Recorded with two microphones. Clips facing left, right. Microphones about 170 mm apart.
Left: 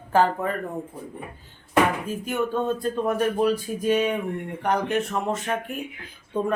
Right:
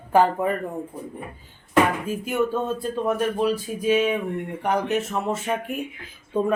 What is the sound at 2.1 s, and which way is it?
Speech, 5° right (ahead or behind).